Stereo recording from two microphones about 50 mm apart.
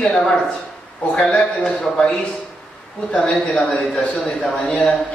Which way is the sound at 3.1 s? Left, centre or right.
Left.